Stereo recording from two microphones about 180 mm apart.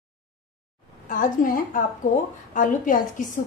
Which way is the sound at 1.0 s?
45° left (ahead or behind).